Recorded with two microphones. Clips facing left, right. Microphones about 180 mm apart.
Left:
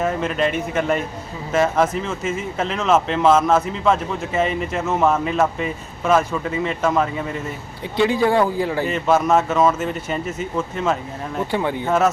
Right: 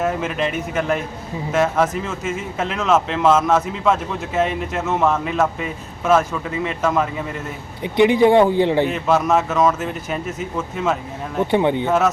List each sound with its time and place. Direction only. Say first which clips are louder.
0.0 s speech: left 1 dB; 5° right (ahead or behind)
7.9 s speech: right 4 dB; 20° right (ahead or behind)
8.9 s speech: left 1 dB; centre (ahead or behind)
11.5 s speech: right 6 dB; 20° right (ahead or behind)
11.9 s speech: left 4 dB; centre (ahead or behind)